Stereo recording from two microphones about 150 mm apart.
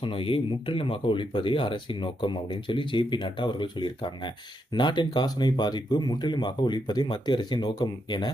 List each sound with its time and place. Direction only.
0.0 s speech: 35° left (ahead or behind)